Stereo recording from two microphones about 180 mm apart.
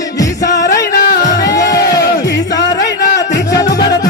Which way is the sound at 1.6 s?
20° left (ahead or behind).